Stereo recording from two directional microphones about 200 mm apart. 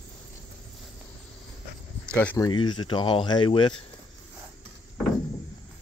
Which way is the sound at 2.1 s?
10° left (ahead or behind).